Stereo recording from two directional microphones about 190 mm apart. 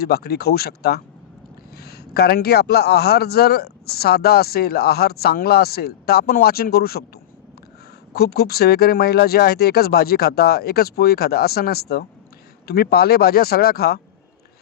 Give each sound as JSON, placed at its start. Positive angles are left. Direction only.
{"t": 0.0, "sound": "a man's voice", "side_deg": 55}
{"t": 8.1, "sound": "a man's voice", "side_deg": 55}